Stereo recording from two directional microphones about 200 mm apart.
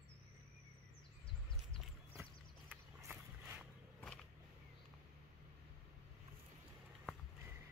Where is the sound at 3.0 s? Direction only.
10° right (ahead or behind).